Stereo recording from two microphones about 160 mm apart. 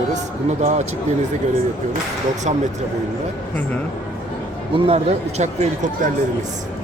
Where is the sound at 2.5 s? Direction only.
45° right (ahead or behind).